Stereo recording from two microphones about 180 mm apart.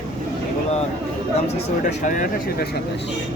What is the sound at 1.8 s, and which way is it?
Speech, 45° left (ahead or behind).